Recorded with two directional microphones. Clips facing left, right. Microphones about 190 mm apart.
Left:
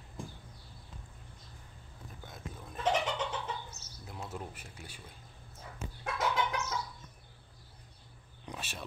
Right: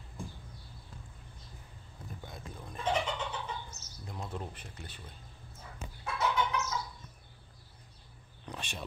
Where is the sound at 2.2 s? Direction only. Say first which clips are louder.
Left 1 dB; centre (ahead or behind).